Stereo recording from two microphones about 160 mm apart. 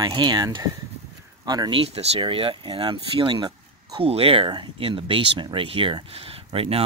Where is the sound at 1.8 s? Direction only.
35° right (ahead or behind).